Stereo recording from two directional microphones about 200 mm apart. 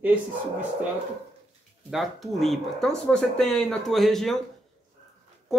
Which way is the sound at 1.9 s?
Centre (ahead or behind).